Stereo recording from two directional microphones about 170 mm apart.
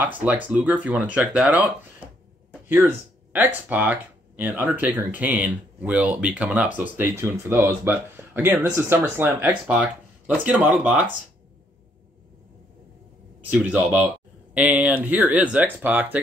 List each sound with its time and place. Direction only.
0.0 s speech: 10° right (ahead or behind)
2.7 s speech: 10° right (ahead or behind)
13.5 s speech: 5° right (ahead or behind)